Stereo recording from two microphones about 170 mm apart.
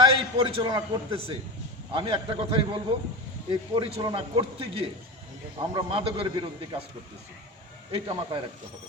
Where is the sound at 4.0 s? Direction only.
25° right (ahead or behind).